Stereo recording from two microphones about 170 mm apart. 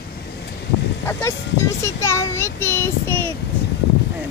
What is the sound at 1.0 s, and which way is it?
A child's voice, 15° left (ahead or behind).